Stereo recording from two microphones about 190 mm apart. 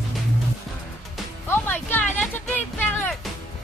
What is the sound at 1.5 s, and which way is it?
Music, 10° left (ahead or behind).